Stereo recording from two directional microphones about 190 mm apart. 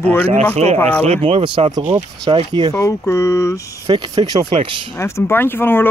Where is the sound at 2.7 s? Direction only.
15° left (ahead or behind).